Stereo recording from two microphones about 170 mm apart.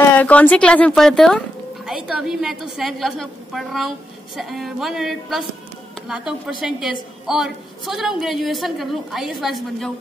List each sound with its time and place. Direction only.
0.2 s a woman's voice: 10° left (ahead or behind)